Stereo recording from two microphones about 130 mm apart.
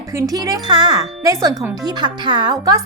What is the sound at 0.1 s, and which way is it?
Speech, 25° right (ahead or behind).